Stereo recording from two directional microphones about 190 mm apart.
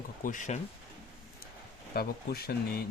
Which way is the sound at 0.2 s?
45° left (ahead or behind).